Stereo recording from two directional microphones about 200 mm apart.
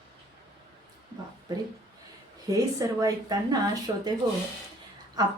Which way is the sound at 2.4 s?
20° right (ahead or behind).